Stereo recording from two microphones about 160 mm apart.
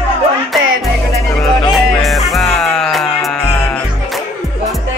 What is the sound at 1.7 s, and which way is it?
Music, centre (ahead or behind).